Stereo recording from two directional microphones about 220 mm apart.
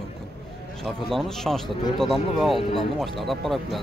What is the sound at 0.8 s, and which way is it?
Speech, centre (ahead or behind).